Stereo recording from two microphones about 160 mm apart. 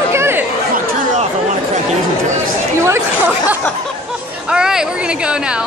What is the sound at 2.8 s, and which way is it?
Speech, 15° right (ahead or behind).